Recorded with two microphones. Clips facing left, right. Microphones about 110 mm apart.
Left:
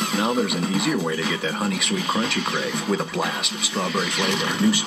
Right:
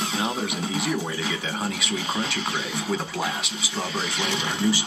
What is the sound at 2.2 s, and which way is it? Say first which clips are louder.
Speech: left 4 dB; 60° left (ahead or behind).